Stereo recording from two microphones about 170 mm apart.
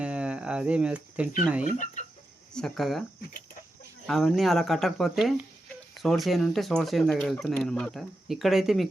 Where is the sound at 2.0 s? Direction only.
45° left (ahead or behind).